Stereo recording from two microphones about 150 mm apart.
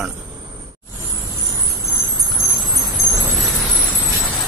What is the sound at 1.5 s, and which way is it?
Vehicle, 25° right (ahead or behind).